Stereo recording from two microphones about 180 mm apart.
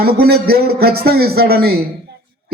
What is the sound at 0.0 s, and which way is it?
A man's voice, 60° right (ahead or behind).